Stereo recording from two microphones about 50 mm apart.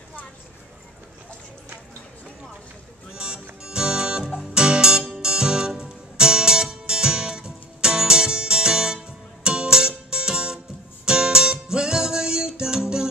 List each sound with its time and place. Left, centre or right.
3.1 s music: centre